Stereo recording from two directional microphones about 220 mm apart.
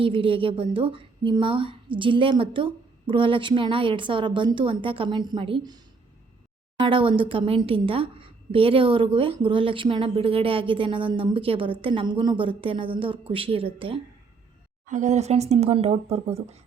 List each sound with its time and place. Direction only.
0.0 s a woman's voice: 25° right (ahead or behind)
6.8 s a woman's voice: 25° right (ahead or behind)